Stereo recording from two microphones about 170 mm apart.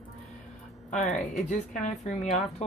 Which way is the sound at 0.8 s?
45° left (ahead or behind).